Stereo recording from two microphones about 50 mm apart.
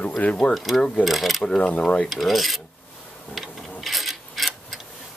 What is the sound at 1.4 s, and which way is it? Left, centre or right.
Speech, centre.